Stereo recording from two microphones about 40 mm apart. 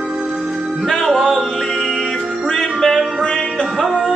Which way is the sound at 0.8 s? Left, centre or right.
Centre.